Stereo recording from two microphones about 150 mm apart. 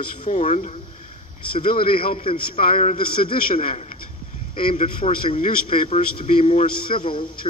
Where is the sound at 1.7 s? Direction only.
35° left (ahead or behind).